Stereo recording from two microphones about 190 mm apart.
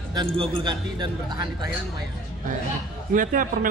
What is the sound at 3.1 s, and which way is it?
Speech, 45° right (ahead or behind).